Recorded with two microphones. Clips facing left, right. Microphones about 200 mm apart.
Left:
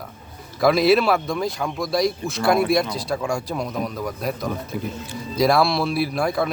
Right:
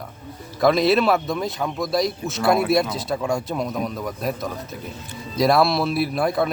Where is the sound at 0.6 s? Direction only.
Centre (ahead or behind).